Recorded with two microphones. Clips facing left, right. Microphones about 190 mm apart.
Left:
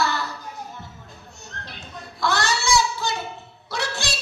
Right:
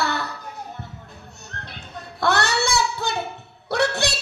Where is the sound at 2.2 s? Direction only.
60° right (ahead or behind).